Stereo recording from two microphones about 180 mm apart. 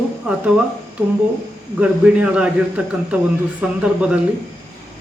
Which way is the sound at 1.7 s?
5° right (ahead or behind).